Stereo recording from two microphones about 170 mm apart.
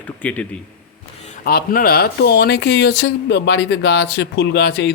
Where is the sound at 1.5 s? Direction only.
65° left (ahead or behind).